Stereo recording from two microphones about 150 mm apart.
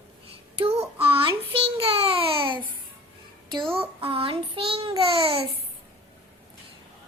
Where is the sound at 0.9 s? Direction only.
40° right (ahead or behind).